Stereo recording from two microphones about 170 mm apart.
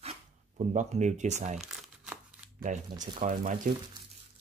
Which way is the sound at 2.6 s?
45° right (ahead or behind).